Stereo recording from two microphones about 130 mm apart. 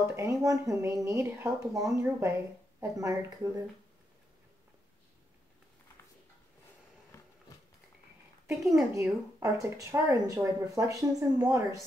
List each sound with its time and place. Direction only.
0.1 s speech: 25° right (ahead or behind)
8.5 s a woman's voice: centre (ahead or behind)
8.9 s speech: 25° right (ahead or behind)